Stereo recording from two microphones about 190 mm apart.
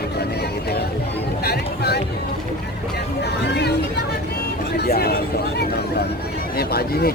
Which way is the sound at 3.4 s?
60° left (ahead or behind).